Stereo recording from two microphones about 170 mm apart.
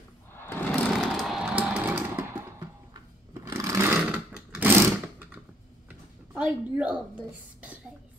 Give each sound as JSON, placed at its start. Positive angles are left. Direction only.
{"t": 0.3, "sound": "sewing machine", "side_deg": 15}
{"t": 0.7, "sound": "chainsaw", "side_deg": 0}
{"t": 2.9, "sound": "shuffling cards", "side_deg": -20}
{"t": 4.6, "sound": "sewing machine", "side_deg": -10}
{"t": 5.9, "sound": "a sound", "side_deg": -10}